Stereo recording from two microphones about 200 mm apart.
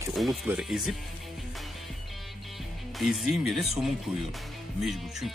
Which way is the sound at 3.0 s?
Centre (ahead or behind).